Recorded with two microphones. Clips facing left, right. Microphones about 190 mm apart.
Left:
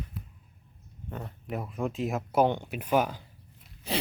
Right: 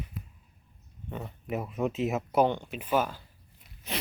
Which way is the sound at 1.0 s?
5° right (ahead or behind).